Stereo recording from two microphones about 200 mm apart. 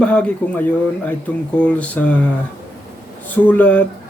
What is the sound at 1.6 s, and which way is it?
Speech, 5° left (ahead or behind).